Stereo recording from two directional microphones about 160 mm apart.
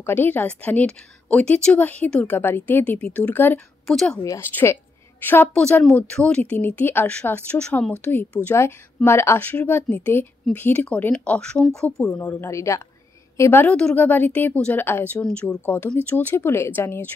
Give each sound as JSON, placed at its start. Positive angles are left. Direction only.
{"t": 0.0, "sound": "a woman's voice", "side_deg": 10}
{"t": 4.2, "sound": "a woman's voice", "side_deg": 15}